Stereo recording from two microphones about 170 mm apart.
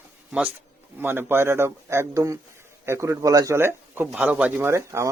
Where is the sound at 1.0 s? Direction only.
10° right (ahead or behind).